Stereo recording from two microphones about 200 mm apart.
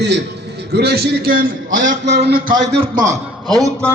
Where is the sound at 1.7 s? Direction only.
70° right (ahead or behind).